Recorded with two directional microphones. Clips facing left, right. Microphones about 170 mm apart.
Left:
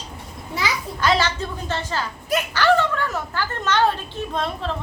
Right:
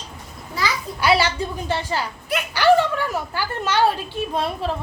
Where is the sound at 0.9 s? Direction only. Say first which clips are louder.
Right 2 dB; 10° right (ahead or behind).